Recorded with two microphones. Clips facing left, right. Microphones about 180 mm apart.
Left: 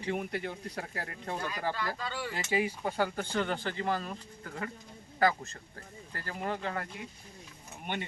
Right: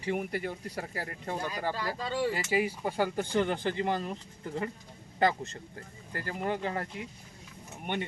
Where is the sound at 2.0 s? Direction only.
30° right (ahead or behind).